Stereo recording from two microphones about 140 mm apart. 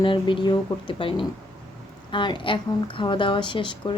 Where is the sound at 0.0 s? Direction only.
35° left (ahead or behind).